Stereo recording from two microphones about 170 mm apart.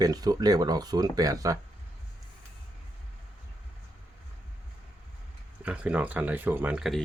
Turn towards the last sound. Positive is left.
turn(degrees=0)  # may be behind; listen again after turning